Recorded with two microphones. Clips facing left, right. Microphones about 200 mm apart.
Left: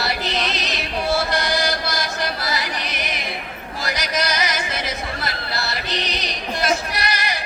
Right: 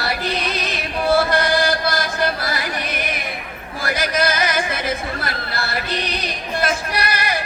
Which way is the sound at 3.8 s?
55° right (ahead or behind).